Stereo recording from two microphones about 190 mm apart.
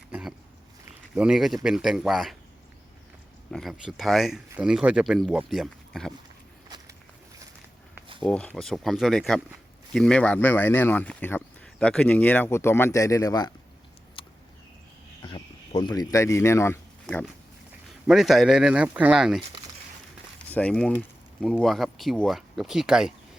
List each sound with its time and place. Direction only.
0.1 s a sound: 5° right (ahead or behind)
1.1 s speech: 5° right (ahead or behind)
3.5 s speech: centre (ahead or behind)
6.7 s walk: 20° right (ahead or behind)
8.2 s speech: 5° left (ahead or behind)
14.2 s a sound: 25° left (ahead or behind)
15.2 s speech: 25° left (ahead or behind)
17.8 s speech: centre (ahead or behind)
20.5 s speech: 5° left (ahead or behind)